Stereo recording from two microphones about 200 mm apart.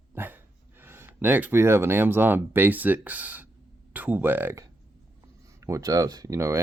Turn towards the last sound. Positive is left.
turn(degrees=-15)  # may be behind; listen again after turning